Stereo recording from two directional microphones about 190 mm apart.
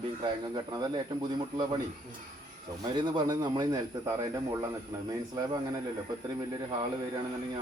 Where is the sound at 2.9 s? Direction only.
25° right (ahead or behind).